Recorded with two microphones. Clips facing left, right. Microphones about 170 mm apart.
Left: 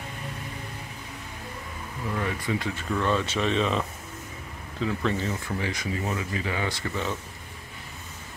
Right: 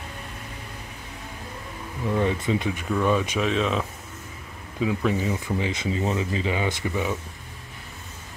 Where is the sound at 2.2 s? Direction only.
20° right (ahead or behind).